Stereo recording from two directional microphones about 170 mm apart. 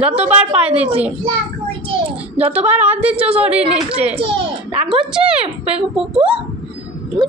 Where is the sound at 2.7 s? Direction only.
10° right (ahead or behind).